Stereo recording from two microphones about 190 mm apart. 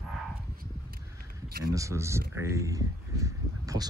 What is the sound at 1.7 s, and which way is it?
Speech, 15° right (ahead or behind).